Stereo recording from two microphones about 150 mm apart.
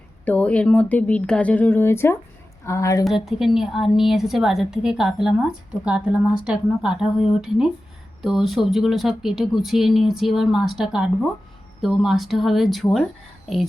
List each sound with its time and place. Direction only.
0.3 s a woman's voice: 10° left (ahead or behind)
3.2 s a woman's voice: 5° right (ahead or behind)